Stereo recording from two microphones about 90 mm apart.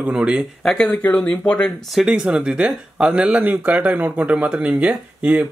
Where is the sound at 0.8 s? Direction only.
20° left (ahead or behind).